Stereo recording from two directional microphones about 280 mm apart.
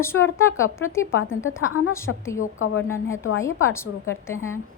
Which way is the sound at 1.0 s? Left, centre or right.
Left.